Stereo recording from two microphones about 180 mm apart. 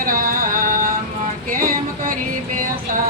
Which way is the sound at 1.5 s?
50° right (ahead or behind).